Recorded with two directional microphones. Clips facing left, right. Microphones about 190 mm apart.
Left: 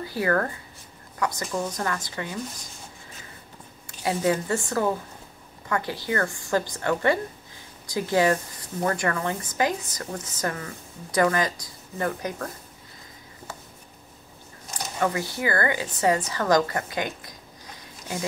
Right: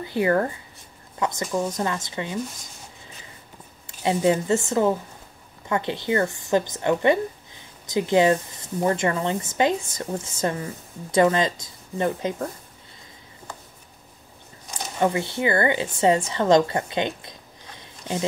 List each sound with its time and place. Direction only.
0.0 s speech: 20° right (ahead or behind)
4.0 s speech: 25° right (ahead or behind)
15.0 s a woman's voice: 25° right (ahead or behind)